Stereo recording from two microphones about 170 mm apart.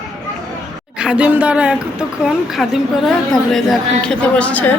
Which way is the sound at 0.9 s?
5° right (ahead or behind).